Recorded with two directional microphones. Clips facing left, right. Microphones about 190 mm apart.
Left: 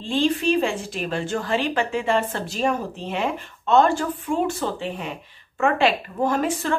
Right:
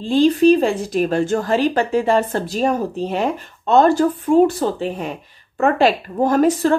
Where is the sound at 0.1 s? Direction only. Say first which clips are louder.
Right 8 dB; 40° right (ahead or behind).